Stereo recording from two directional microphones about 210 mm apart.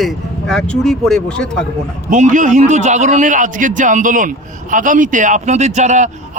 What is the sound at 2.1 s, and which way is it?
Speech, 35° right (ahead or behind).